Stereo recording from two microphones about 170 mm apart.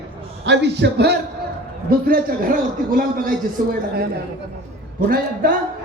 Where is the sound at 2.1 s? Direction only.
55° right (ahead or behind).